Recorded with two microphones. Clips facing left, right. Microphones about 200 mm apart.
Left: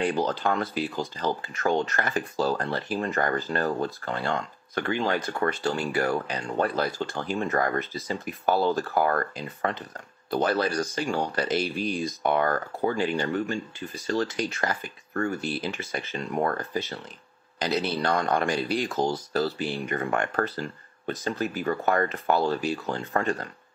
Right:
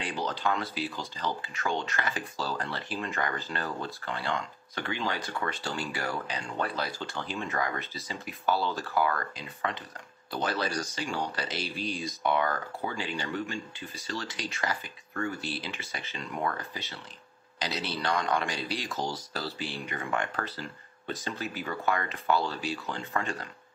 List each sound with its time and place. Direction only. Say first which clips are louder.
0.0 s speech: left 6 dB; 50° left (ahead or behind)